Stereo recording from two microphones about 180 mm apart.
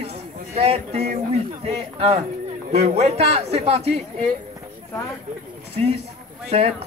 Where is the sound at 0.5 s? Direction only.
35° right (ahead or behind).